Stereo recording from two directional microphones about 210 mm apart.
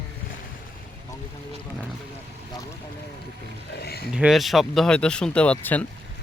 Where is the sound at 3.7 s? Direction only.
50° left (ahead or behind).